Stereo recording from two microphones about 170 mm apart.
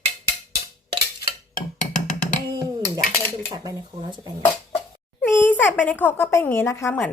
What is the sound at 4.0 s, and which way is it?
Speech, 30° right (ahead or behind).